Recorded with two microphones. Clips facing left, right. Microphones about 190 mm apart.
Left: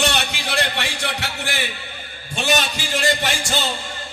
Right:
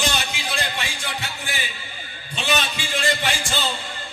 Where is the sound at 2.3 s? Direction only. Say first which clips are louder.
Left 3 dB; 45° left (ahead or behind).